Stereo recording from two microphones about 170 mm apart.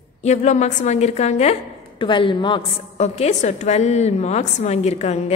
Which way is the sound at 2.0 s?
30° left (ahead or behind).